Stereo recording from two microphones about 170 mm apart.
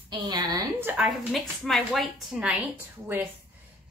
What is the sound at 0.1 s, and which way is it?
Speech, 25° right (ahead or behind).